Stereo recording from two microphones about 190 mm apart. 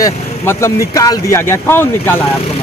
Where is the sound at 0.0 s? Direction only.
15° left (ahead or behind).